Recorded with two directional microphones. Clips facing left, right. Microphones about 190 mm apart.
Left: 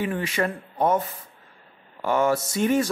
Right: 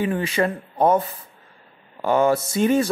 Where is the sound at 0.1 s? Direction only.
30° right (ahead or behind).